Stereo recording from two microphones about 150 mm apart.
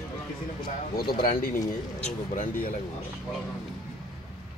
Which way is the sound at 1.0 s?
85° left.